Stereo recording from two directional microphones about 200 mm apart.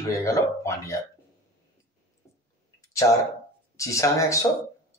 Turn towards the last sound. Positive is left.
turn(degrees=15)  # may be behind; listen again after turning